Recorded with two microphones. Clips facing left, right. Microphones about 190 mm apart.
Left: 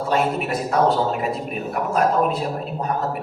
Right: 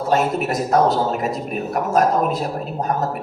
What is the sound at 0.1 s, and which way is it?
A man's voice, 45° right (ahead or behind).